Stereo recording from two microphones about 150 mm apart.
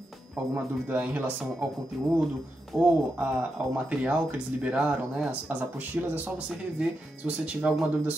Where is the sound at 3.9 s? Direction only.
10° right (ahead or behind).